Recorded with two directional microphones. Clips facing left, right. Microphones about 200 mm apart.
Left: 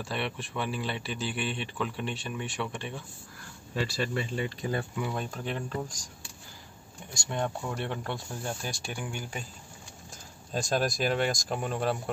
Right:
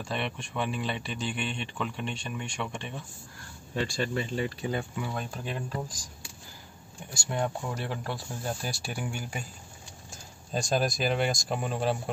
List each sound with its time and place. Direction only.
0.0 s speech: 5° left (ahead or behind)
7.2 s speech: 5° right (ahead or behind)
10.5 s speech: centre (ahead or behind)